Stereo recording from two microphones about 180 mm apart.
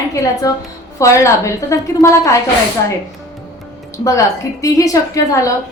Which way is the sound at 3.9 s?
15° left (ahead or behind).